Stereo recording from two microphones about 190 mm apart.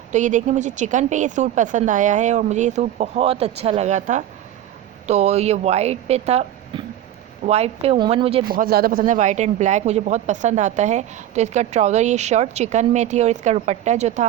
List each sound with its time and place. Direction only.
0.1 s speech: 40° right (ahead or behind)
8.4 s speech: 50° right (ahead or behind)